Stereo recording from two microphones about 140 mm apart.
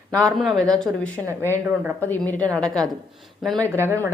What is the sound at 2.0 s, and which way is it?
Speech, 15° left (ahead or behind).